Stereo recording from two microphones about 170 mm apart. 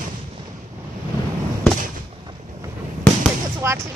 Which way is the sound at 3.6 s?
15° right (ahead or behind).